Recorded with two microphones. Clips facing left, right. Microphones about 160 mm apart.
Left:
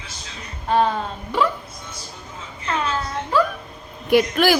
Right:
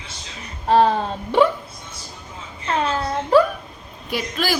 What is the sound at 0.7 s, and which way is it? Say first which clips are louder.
Speech: right 3 dB; 35° right (ahead or behind).